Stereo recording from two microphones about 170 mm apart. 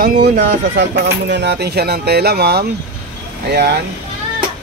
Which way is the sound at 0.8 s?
90° right.